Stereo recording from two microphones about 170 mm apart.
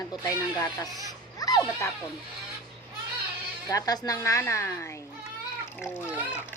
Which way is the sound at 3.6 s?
20° left (ahead or behind).